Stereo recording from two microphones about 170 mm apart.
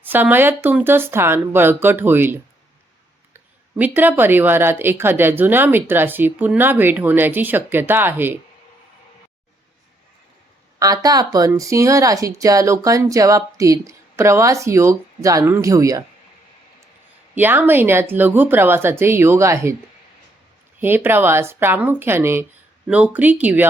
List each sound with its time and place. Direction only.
0.0 s speech: 10° right (ahead or behind)
10.8 s speech: 20° right (ahead or behind)
17.3 s speech: 10° right (ahead or behind)
20.7 s speech: 10° right (ahead or behind)